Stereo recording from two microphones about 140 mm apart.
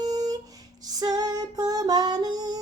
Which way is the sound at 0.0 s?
30° right (ahead or behind).